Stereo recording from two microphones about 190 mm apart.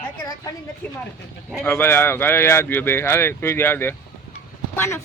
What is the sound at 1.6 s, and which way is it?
Speech, 10° left (ahead or behind).